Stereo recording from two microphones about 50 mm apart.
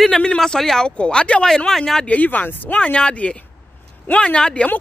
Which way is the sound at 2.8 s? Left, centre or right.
Left.